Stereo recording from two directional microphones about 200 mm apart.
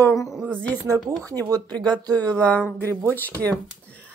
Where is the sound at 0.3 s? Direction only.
5° right (ahead or behind).